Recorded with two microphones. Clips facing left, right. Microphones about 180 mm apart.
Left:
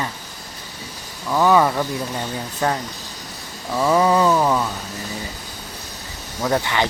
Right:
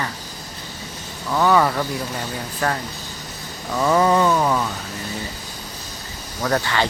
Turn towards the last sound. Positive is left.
turn(degrees=15)  # may be behind; listen again after turning